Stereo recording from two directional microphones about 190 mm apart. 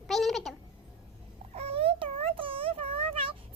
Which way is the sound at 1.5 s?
30° right (ahead or behind).